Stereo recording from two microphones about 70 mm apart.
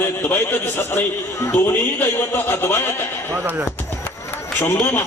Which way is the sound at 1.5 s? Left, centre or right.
Left.